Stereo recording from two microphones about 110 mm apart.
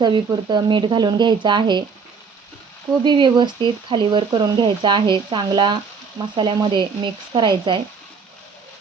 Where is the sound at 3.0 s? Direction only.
45° right (ahead or behind).